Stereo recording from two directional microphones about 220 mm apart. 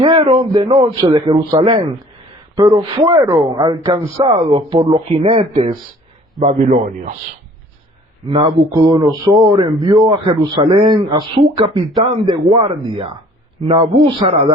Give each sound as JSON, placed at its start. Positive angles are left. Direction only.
{"t": 0.0, "sound": "a man's voice", "side_deg": -25}
{"t": 2.6, "sound": "speech", "side_deg": -15}
{"t": 4.9, "sound": "a man's voice", "side_deg": -30}
{"t": 8.3, "sound": "a man's voice", "side_deg": -25}